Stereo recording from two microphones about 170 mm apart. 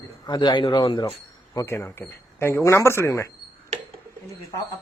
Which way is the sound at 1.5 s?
15° left (ahead or behind).